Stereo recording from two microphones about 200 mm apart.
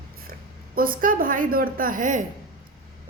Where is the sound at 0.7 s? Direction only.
45° right (ahead or behind).